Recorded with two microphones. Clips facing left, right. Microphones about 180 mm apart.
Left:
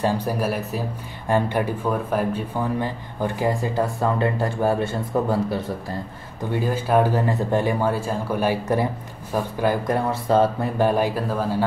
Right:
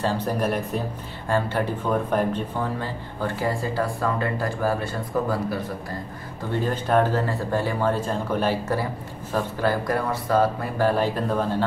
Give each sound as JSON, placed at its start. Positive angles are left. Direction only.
{"t": 0.0, "sound": "speech", "side_deg": 10}
{"t": 2.8, "sound": "speech", "side_deg": 15}
{"t": 6.5, "sound": "speech", "side_deg": 10}